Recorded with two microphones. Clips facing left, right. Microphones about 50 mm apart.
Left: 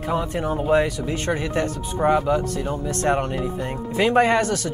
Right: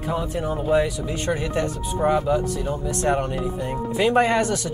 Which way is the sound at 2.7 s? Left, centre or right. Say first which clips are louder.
Left 1 dB; left.